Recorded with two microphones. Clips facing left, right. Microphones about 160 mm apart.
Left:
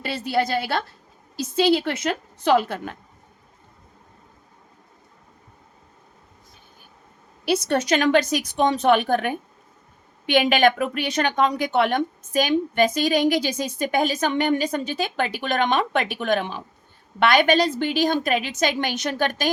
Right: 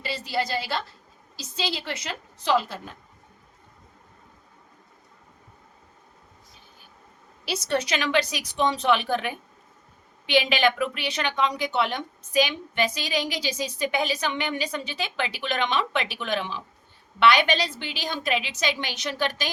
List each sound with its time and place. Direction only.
0.0 s a woman's voice: 55° left (ahead or behind)
7.4 s a woman's voice: 55° left (ahead or behind)